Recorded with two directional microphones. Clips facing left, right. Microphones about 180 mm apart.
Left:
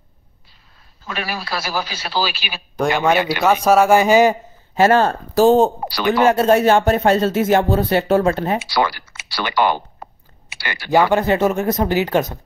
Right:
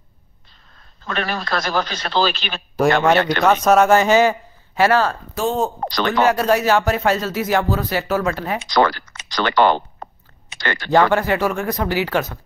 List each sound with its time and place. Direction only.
1.0 s a man's voice: 10° left (ahead or behind)
5.3 s speech: 35° left (ahead or behind)
5.8 s a man's voice: 10° left (ahead or behind)
6.2 s speech: 25° left (ahead or behind)
8.5 s a man's voice: 10° left (ahead or behind)
10.0 s a sound: 10° left (ahead or behind)
10.5 s speech: 10° left (ahead or behind)